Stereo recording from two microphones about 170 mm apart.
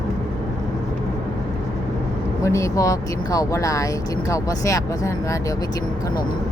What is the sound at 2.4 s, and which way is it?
Speech, 20° left (ahead or behind).